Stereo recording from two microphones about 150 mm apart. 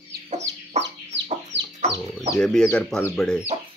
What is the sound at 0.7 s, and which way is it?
Chicken, 45° right (ahead or behind).